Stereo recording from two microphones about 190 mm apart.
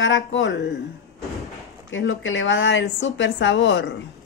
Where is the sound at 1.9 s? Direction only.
80° left.